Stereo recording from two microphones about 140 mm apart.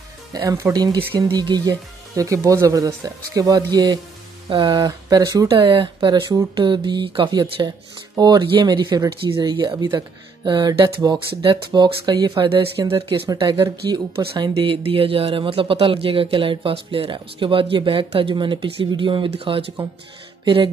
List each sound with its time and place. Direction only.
0.3 s speech: 25° right (ahead or behind)
0.9 s speech: 35° right (ahead or behind)
5.5 s speech: 40° right (ahead or behind)
12.4 s speech: 40° right (ahead or behind)